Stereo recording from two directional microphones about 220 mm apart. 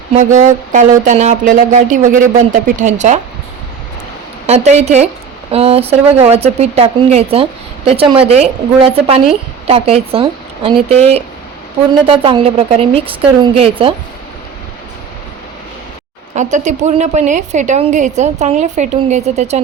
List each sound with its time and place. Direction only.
0.1 s a woman's voice: 30° right (ahead or behind)
4.4 s a woman's voice: 30° right (ahead or behind)
16.3 s a woman's voice: 35° right (ahead or behind)